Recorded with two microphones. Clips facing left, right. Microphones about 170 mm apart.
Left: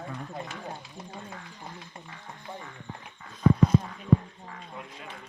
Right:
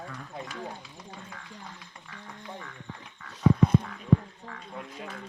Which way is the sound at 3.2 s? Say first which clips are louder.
Left 1 dB; 75° right (ahead or behind).